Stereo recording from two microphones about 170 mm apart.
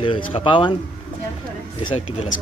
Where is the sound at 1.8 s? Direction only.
35° left (ahead or behind).